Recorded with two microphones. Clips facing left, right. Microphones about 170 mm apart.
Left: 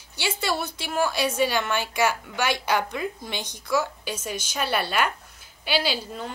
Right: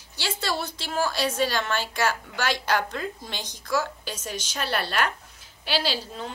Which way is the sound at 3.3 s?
60° left (ahead or behind).